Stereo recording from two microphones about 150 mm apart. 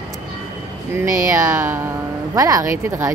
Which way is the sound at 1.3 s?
20° right (ahead or behind).